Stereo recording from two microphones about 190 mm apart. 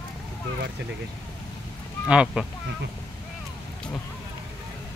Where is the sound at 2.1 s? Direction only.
5° right (ahead or behind).